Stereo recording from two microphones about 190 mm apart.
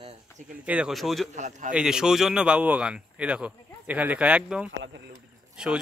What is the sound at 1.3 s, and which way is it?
Speech, 40° right (ahead or behind).